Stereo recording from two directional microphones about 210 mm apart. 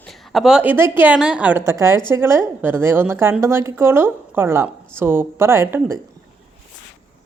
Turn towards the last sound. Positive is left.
turn(degrees=-10)  # may be behind; listen again after turning